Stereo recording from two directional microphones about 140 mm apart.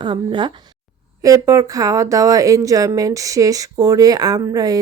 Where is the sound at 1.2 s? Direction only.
25° right (ahead or behind).